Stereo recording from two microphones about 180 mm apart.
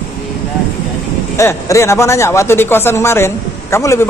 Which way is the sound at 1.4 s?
15° left (ahead or behind).